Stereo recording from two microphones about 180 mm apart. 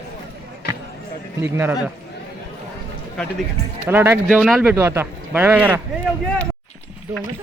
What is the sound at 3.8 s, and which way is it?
Speech, 15° right (ahead or behind).